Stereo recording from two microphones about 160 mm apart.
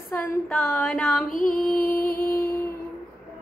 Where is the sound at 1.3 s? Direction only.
60° left (ahead or behind).